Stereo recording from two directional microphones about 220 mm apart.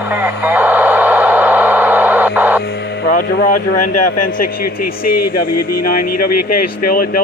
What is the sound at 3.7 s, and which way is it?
Speech, 90° left.